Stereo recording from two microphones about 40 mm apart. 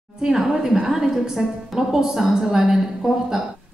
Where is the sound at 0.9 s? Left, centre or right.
Centre.